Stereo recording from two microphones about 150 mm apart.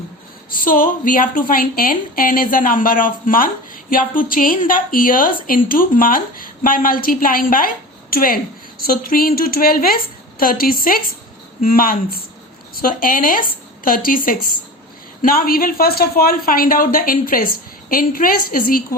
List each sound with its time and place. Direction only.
0.5 s a woman's voice: 70° left (ahead or behind)
15.2 s a woman's voice: 70° left (ahead or behind)